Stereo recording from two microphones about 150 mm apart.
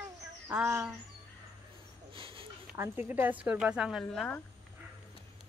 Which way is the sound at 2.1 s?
35° right (ahead or behind).